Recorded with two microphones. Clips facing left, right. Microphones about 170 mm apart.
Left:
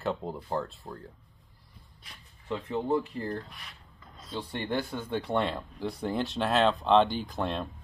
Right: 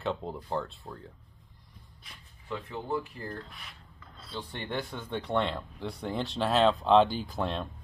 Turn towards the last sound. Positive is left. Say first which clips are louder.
# left 1 dB
turn(degrees=0)  # may be behind; listen again after turning